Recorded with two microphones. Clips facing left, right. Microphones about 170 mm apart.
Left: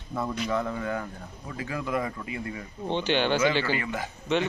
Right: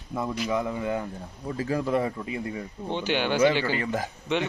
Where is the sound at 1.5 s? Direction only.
35° right (ahead or behind).